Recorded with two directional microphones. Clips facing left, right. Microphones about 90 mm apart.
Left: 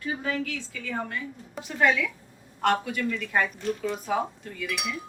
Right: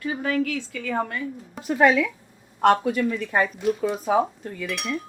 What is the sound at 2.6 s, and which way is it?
Speech, 40° right (ahead or behind).